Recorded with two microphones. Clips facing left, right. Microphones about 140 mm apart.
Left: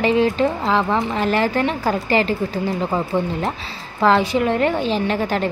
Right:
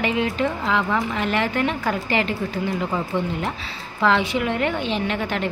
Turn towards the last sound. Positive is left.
turn(degrees=35)  # may be behind; listen again after turning